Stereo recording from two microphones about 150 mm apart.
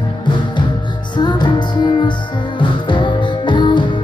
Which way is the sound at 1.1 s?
30° left (ahead or behind).